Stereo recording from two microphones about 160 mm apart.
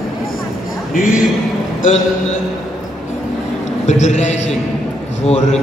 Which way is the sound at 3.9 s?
45° left (ahead or behind).